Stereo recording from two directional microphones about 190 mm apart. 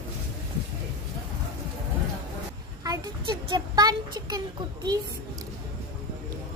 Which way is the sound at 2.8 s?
20° right (ahead or behind).